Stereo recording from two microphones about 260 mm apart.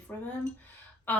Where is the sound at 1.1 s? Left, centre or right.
Centre.